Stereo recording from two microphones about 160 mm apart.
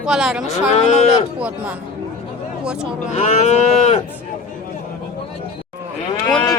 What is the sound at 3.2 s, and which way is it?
Cattle, 40° left (ahead or behind).